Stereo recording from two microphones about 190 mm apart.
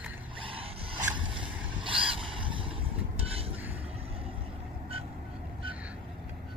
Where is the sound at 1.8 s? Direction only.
25° right (ahead or behind).